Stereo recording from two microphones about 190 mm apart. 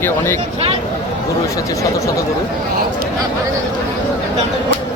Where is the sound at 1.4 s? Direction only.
15° left (ahead or behind).